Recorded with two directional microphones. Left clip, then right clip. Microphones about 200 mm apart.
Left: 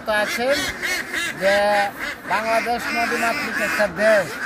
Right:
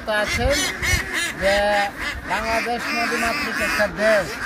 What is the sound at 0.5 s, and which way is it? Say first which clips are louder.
Speech: right 1 dB; 55° right (ahead or behind).